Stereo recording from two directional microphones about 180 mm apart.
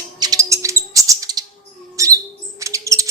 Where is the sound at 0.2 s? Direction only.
20° right (ahead or behind).